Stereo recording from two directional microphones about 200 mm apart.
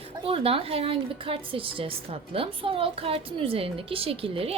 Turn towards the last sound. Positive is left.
turn(degrees=-30)  # may be behind; listen again after turning